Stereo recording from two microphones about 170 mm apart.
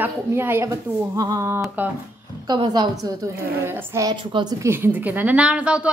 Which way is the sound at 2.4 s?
25° right (ahead or behind).